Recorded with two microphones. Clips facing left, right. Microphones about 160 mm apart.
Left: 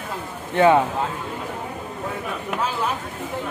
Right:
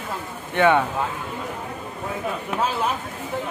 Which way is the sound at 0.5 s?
30° left (ahead or behind).